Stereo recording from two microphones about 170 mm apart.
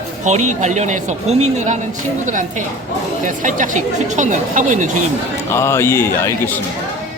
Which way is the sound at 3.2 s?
50° right (ahead or behind).